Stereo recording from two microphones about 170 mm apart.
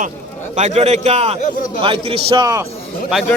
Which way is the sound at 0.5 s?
40° right (ahead or behind).